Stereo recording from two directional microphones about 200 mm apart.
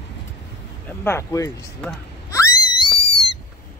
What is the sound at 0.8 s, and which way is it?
Speech, 10° left (ahead or behind).